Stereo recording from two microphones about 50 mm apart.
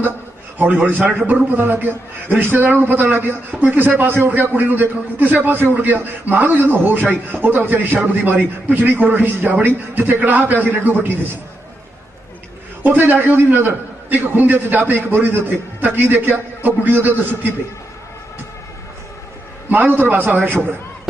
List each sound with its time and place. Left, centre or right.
0.6 s a man's voice: right
12.8 s a man's voice: right
19.7 s a man's voice: right